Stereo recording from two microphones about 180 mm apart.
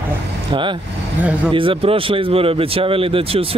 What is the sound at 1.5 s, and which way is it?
Speech, 30° right (ahead or behind).